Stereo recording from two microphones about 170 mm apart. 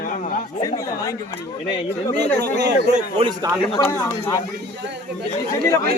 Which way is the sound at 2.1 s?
75° right (ahead or behind).